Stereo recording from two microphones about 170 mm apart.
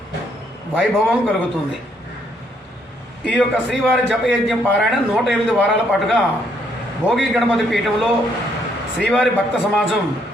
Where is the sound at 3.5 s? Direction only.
5° right (ahead or behind).